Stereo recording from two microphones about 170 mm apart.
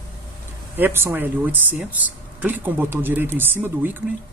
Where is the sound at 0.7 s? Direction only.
10° right (ahead or behind).